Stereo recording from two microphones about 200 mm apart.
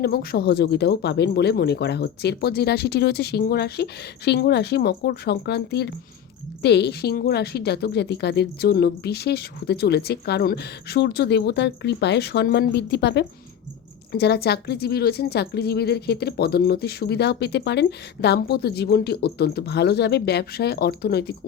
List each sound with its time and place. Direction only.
0.0 s a woman's voice: 50° left (ahead or behind)